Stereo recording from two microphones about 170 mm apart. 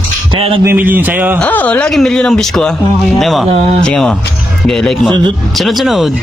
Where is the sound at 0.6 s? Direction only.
10° right (ahead or behind).